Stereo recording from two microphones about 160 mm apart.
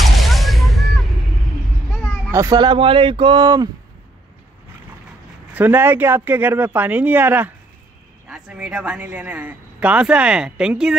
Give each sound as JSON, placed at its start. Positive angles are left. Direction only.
{"t": 0.0, "sound": "a sound", "side_deg": 0}
{"t": 2.3, "sound": "speech", "side_deg": -20}
{"t": 5.5, "sound": "speech", "side_deg": -10}